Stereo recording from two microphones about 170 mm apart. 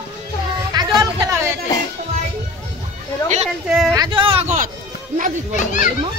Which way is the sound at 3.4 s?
5° right (ahead or behind).